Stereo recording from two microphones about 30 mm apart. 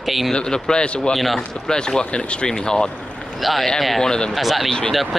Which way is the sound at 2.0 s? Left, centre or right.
Left.